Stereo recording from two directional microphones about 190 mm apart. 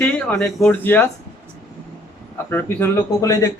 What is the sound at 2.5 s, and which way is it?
Speech, 15° left (ahead or behind).